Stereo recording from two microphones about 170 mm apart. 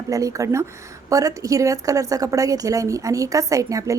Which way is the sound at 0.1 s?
20° right (ahead or behind).